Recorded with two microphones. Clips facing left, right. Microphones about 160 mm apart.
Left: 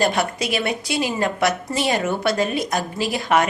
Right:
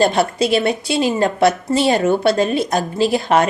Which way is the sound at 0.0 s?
30° right (ahead or behind).